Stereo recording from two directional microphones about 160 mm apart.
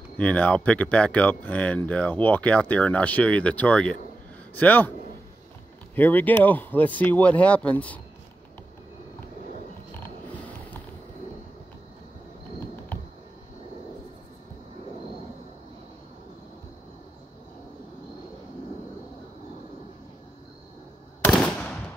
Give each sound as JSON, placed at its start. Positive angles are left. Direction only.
{"t": 0.2, "sound": "speech", "side_deg": 10}
{"t": 5.9, "sound": "speech", "side_deg": 10}
{"t": 21.3, "sound": "machine gun", "side_deg": 5}